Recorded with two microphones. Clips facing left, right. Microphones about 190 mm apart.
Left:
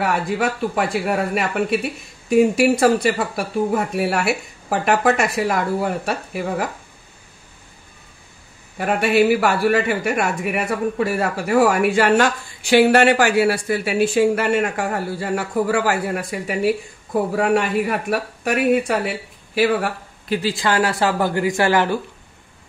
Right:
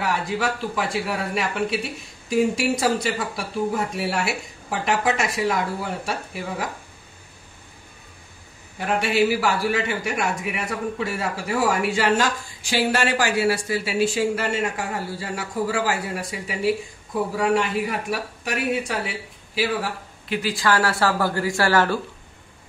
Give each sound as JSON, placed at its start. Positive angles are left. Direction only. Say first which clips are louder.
{"t": 0.0, "sound": "speech", "louder": "left 4 dB", "side_deg": 55}
{"t": 8.7, "sound": "speech", "louder": "left 5 dB", "side_deg": 60}
{"t": 20.2, "sound": "speech", "louder": "left 2 dB", "side_deg": 25}